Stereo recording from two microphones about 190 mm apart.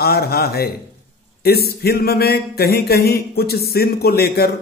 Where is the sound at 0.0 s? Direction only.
55° left (ahead or behind).